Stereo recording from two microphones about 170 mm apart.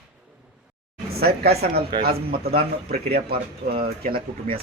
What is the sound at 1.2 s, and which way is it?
A woman's voice, 70° right (ahead or behind).